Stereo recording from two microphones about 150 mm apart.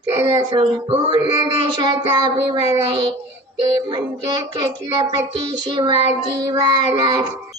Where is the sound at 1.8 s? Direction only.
25° right (ahead or behind).